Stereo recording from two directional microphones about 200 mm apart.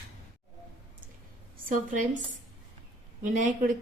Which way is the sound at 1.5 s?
45° right (ahead or behind).